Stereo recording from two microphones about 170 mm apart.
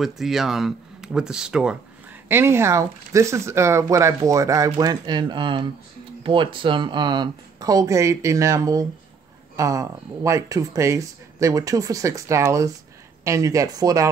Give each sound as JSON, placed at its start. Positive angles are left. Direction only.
{"t": 0.0, "sound": "speech", "side_deg": 0}